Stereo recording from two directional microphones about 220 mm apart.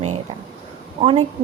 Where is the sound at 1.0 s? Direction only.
25° right (ahead or behind).